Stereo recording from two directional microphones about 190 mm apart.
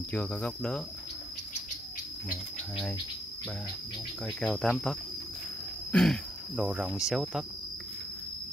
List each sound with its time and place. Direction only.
0.1 s speech: 5° left (ahead or behind)
4.4 s speech: centre (ahead or behind)